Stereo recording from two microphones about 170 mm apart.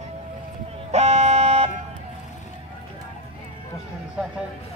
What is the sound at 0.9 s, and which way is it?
Vehicle, 40° right (ahead or behind).